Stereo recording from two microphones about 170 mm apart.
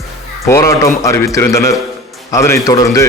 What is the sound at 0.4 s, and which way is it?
A man's voice, 15° left (ahead or behind).